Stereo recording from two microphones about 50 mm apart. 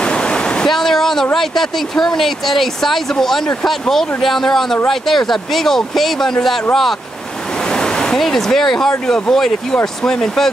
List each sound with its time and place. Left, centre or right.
0.0 s waterfall: centre
0.7 s speech: centre
7.6 s waves: centre
8.2 s speech: centre